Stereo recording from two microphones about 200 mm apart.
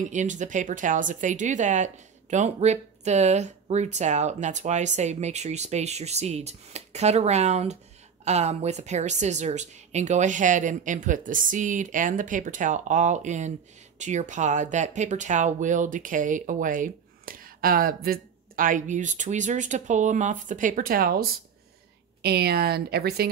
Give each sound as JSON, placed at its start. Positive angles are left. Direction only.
{"t": 0.0, "sound": "speech", "side_deg": -40}